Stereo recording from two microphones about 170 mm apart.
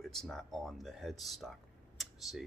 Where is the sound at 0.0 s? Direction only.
Centre (ahead or behind).